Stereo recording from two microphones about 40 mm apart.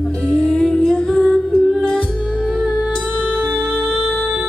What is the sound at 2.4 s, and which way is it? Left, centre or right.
Music, centre.